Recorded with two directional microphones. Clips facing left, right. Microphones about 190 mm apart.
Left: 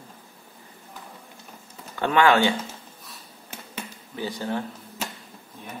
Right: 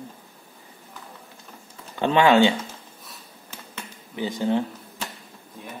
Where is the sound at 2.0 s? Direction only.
20° right (ahead or behind).